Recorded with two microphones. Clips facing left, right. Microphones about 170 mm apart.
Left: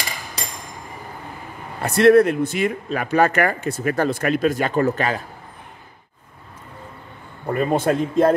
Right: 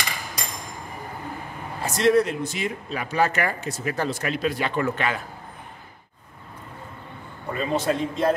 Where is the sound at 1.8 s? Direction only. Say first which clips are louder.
Left 7 dB; 60° left (ahead or behind); by 5.2 s 40° left (ahead or behind).